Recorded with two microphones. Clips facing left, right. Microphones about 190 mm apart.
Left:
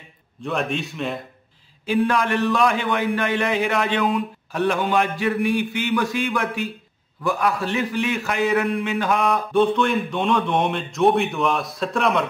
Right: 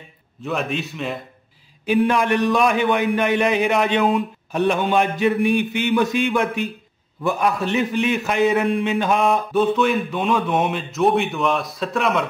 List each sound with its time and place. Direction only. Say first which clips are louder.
0.4 s speech: even; centre (ahead or behind)
1.9 s a man's voice: right 2 dB; 20° right (ahead or behind)
9.5 s speech: right 1 dB; 5° right (ahead or behind)